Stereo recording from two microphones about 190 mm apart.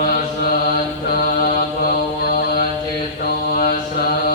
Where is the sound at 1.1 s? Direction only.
50° left (ahead or behind).